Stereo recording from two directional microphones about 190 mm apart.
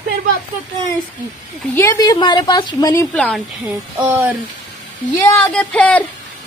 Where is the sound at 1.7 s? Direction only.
15° left (ahead or behind).